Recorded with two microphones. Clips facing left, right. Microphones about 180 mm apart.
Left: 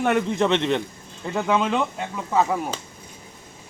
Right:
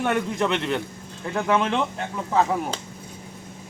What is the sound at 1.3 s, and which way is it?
Speech, 5° left (ahead or behind).